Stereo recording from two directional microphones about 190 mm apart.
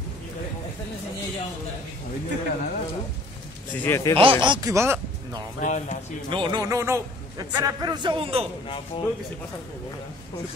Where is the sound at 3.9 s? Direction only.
15° left (ahead or behind).